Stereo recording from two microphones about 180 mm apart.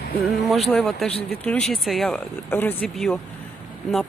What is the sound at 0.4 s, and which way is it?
Speech, centre (ahead or behind).